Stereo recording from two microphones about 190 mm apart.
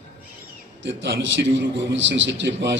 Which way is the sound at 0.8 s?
70° right (ahead or behind).